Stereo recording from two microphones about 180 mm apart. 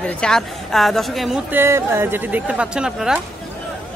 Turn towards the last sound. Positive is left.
turn(degrees=-5)  # may be behind; listen again after turning